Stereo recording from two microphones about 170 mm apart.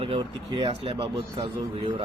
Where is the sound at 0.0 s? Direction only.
30° right (ahead or behind).